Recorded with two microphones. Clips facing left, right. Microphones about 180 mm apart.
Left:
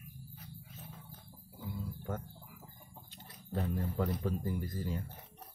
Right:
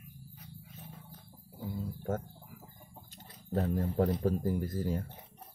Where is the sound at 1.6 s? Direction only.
40° right (ahead or behind).